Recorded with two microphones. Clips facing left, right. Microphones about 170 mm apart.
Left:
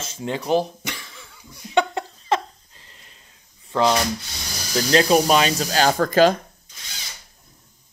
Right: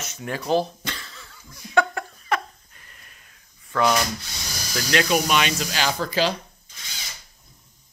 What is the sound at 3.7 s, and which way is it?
Speech, 25° left (ahead or behind).